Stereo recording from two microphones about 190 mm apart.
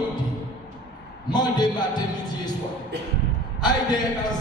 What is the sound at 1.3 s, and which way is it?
Speech, 20° left (ahead or behind).